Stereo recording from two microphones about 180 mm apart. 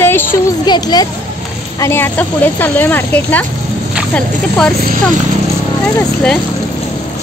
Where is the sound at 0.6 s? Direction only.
20° left (ahead or behind).